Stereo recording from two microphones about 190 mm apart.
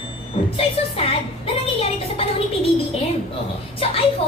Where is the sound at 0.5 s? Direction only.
30° left (ahead or behind).